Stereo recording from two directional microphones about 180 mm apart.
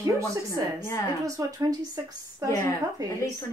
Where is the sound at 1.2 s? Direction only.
20° right (ahead or behind).